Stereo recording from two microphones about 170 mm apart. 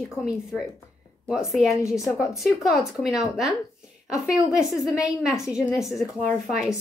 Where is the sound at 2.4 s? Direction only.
Centre (ahead or behind).